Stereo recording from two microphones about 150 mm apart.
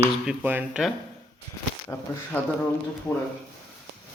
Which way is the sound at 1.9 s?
20° left (ahead or behind).